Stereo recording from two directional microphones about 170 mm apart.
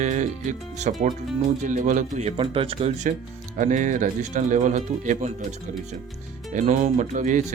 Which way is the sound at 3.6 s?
50° right (ahead or behind).